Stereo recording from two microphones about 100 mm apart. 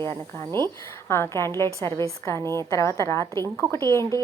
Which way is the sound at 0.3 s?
25° left (ahead or behind).